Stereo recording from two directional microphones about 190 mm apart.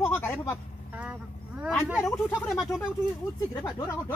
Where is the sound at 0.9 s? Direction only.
5° right (ahead or behind).